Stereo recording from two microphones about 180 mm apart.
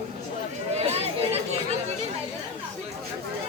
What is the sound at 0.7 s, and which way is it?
Chatter, 35° right (ahead or behind).